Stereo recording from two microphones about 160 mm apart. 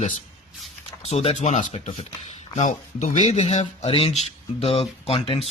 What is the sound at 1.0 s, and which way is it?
Speech, 40° left (ahead or behind).